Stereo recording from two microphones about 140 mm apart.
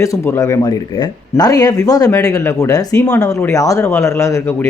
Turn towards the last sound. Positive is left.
turn(degrees=20)  # may be behind; listen again after turning